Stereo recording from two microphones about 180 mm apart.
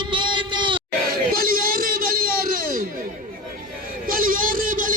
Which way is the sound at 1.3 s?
55° right (ahead or behind).